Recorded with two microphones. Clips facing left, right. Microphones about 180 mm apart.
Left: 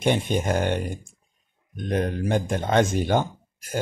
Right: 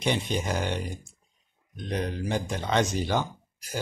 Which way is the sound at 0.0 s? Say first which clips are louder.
Left 5 dB; 50° left (ahead or behind).